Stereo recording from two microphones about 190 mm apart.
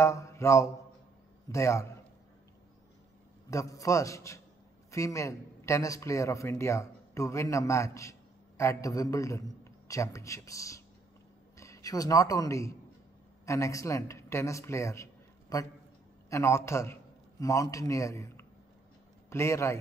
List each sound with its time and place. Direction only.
0.0 s speech: 15° left (ahead or behind)
3.4 s a man's voice: 15° left (ahead or behind)